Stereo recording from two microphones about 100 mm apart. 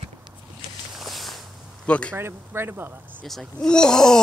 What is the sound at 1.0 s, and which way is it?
Walk, centre (ahead or behind).